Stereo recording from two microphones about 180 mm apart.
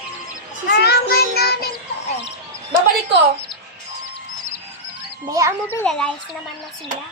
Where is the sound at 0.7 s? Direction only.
65° left (ahead or behind).